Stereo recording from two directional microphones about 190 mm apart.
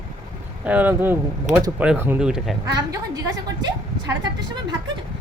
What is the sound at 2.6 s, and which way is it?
A woman's voice, 20° right (ahead or behind).